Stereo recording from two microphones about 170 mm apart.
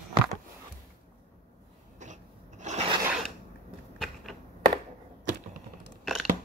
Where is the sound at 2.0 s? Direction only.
45° right (ahead or behind).